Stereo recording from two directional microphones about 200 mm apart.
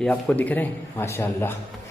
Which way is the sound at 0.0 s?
5° left (ahead or behind).